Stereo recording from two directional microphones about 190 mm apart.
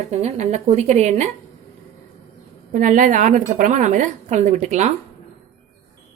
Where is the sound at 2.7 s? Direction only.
45° right (ahead or behind).